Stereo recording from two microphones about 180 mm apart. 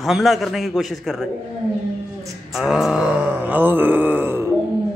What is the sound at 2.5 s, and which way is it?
Mantra, centre (ahead or behind).